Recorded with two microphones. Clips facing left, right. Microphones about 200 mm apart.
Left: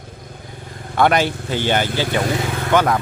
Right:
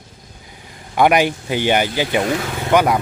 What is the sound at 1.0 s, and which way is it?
A man's voice, 15° right (ahead or behind).